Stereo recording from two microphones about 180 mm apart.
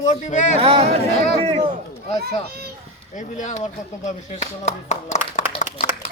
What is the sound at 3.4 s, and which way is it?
Speech, 40° left (ahead or behind).